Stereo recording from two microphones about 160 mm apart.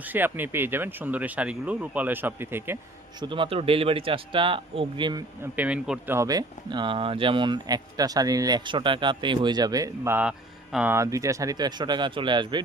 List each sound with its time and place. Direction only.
0.0 s speech: 10° right (ahead or behind)
3.2 s speech: 30° right (ahead or behind)
5.4 s speech: 10° right (ahead or behind)
6.1 s speech: 25° right (ahead or behind); by 10.9 s 5° right (ahead or behind)
10.9 s speech: 20° right (ahead or behind)